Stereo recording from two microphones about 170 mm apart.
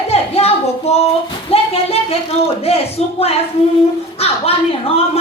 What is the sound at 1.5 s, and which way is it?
A woman's voice, 35° left (ahead or behind).